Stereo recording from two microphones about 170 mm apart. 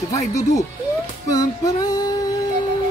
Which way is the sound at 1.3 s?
20° left (ahead or behind).